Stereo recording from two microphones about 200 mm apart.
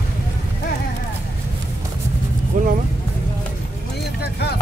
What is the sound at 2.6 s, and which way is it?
Vehicle, 40° right (ahead or behind).